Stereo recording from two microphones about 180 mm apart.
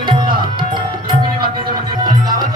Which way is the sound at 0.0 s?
25° right (ahead or behind).